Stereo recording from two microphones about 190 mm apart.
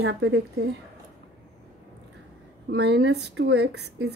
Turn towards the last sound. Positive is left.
turn(degrees=-60)  # may be behind; listen again after turning